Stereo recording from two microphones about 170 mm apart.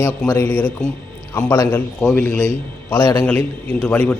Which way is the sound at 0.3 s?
15° left (ahead or behind).